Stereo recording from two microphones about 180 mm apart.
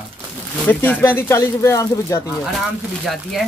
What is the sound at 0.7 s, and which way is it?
Speech, 10° left (ahead or behind).